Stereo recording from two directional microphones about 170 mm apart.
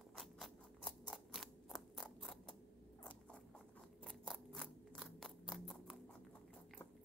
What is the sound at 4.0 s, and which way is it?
Scissors, 5° left (ahead or behind).